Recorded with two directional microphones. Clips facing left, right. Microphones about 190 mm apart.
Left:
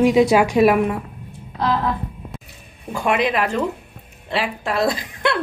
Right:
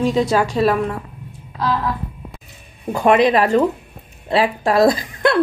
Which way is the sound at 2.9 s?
40° right (ahead or behind).